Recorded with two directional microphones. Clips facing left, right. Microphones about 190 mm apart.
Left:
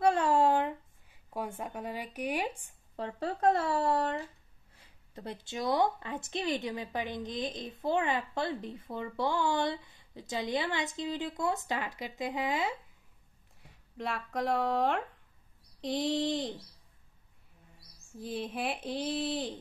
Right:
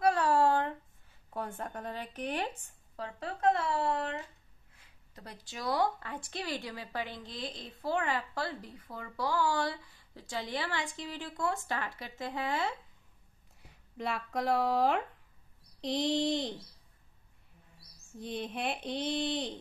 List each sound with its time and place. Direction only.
0.0 s a sound: 25° left (ahead or behind)
3.0 s speech: 35° left (ahead or behind)
5.1 s speech: 25° left (ahead or behind)
13.6 s speech: centre (ahead or behind)
18.1 s speech: centre (ahead or behind)